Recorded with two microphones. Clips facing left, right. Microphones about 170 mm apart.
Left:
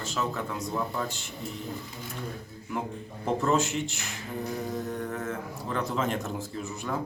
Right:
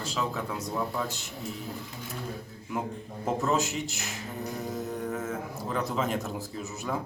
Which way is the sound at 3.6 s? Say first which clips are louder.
Left 2 dB; 40° right (ahead or behind).